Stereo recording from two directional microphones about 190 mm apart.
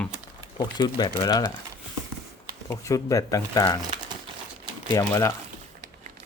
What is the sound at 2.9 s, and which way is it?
Speech, 15° left (ahead or behind).